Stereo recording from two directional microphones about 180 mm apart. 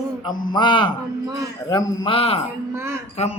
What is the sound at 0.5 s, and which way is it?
A man's voice, 25° left (ahead or behind).